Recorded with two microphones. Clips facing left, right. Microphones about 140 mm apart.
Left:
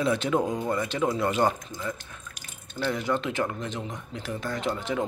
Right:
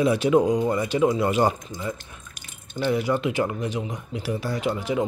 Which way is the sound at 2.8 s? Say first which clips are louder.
Right 4 dB; 5° right (ahead or behind).